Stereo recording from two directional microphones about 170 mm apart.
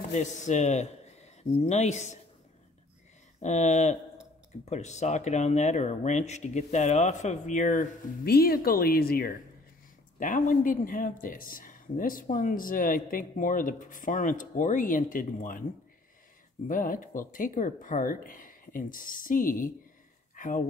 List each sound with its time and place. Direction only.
0.1 s speech: 45° left (ahead or behind)
3.4 s speech: 45° left (ahead or behind); by 9.3 s 60° left (ahead or behind)
10.1 s speech: 50° left (ahead or behind)
16.6 s speech: 55° left (ahead or behind)